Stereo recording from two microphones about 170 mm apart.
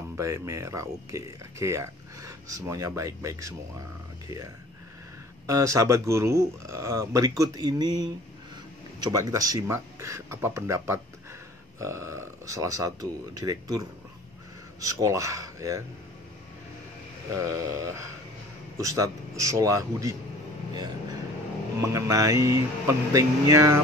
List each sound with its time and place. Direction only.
0.2 s speech: 20° right (ahead or behind)
5.5 s speech: 20° right (ahead or behind)
17.3 s speech: 20° right (ahead or behind)
21.8 s speech: 20° right (ahead or behind)